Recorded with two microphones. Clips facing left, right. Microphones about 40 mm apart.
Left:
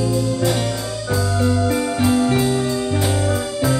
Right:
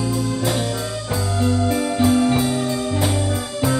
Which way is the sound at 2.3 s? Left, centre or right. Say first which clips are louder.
Left 1 dB; centre.